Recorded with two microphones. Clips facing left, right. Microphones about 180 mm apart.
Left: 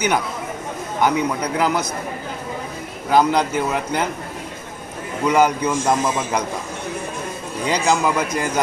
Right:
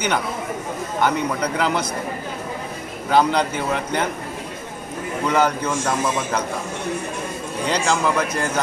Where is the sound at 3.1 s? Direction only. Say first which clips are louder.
Left 2 dB; 10° left (ahead or behind).